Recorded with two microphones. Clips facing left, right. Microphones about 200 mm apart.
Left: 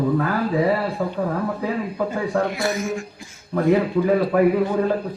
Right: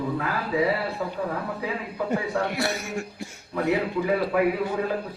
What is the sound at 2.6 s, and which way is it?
Speech, 65° right (ahead or behind).